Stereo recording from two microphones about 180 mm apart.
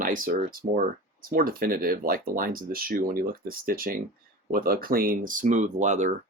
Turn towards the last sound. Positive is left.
turn(degrees=-40)  # may be behind; listen again after turning